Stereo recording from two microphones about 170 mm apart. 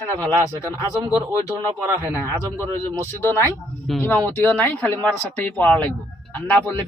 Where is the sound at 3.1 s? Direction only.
15° left (ahead or behind).